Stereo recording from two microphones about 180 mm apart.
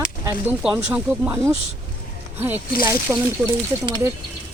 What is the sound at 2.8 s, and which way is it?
Speech, 15° right (ahead or behind).